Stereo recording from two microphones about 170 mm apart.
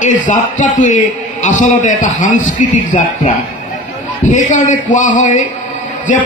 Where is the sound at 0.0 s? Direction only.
45° left (ahead or behind).